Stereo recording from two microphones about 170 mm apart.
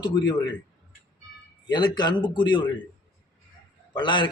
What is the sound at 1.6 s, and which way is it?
A man's voice, 25° left (ahead or behind).